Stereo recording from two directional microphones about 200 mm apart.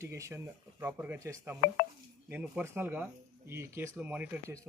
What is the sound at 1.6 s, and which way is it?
Speech, 50° left (ahead or behind).